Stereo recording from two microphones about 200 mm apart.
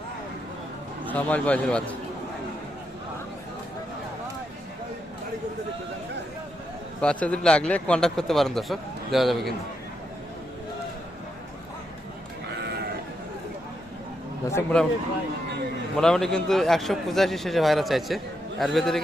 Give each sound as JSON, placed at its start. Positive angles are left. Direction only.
{"t": 1.1, "sound": "a man's voice", "side_deg": 5}
{"t": 7.0, "sound": "a man's voice", "side_deg": 5}
{"t": 14.5, "sound": "a man's voice", "side_deg": 5}
{"t": 16.0, "sound": "a man's voice", "side_deg": 0}